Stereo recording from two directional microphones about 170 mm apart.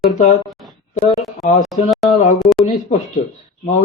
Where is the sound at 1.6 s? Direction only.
Centre (ahead or behind).